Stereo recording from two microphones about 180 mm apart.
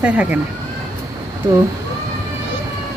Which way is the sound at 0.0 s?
5° right (ahead or behind).